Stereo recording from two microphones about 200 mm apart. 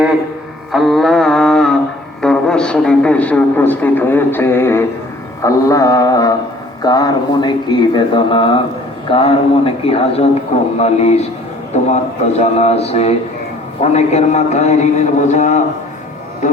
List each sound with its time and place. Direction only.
0.7 s mantra: centre (ahead or behind)
2.2 s a man's voice: 5° left (ahead or behind); by 15.6 s 35° left (ahead or behind)